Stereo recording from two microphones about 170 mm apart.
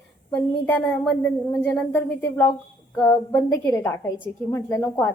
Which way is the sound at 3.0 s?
20° left (ahead or behind).